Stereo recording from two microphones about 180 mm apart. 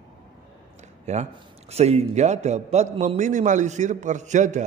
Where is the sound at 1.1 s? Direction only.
40° right (ahead or behind).